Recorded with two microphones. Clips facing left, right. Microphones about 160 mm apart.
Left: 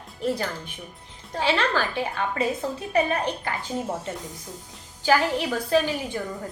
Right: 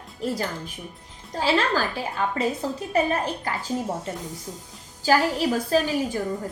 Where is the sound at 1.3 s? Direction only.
40° right (ahead or behind).